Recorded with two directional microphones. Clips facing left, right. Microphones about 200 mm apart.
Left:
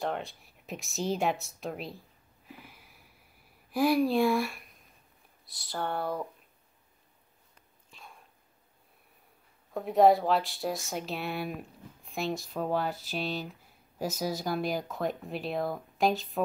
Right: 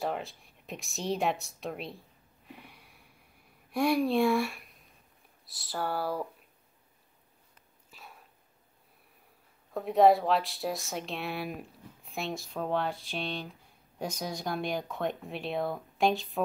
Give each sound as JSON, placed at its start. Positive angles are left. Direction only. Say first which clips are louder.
{"t": 0.0, "sound": "a woman's voice", "louder": "even", "side_deg": 0}
{"t": 7.9, "sound": "a sound", "louder": "even", "side_deg": -5}
{"t": 9.8, "sound": "speech", "louder": "even", "side_deg": 0}